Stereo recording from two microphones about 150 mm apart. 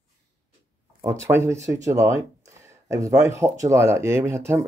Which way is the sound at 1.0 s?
20° right (ahead or behind).